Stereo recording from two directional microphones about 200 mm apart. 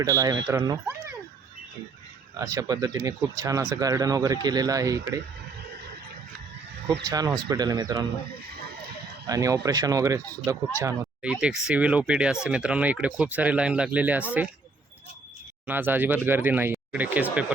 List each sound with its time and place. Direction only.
0.0 s speech: 20° right (ahead or behind)
2.4 s speech: 15° right (ahead or behind)
7.1 s speech: 20° right (ahead or behind)
9.2 s speech: 15° right (ahead or behind)
15.6 s speech: 10° right (ahead or behind)